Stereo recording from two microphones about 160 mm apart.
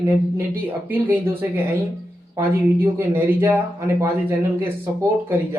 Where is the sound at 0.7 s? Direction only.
10° right (ahead or behind).